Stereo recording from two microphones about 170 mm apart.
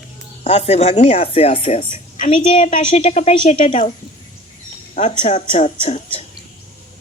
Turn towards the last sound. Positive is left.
turn(degrees=35)  # may be behind; listen again after turning